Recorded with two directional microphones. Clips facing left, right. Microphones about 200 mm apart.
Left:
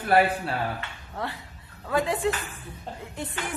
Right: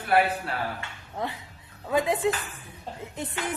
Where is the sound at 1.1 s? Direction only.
20° right (ahead or behind).